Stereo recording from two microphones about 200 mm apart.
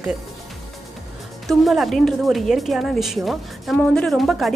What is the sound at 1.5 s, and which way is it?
A woman's voice, centre (ahead or behind).